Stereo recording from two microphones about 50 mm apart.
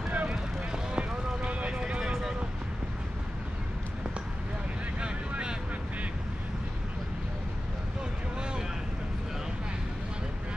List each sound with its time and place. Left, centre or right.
0.1 s a sound: right
1.8 s vehicle: centre
5.0 s vehicle: centre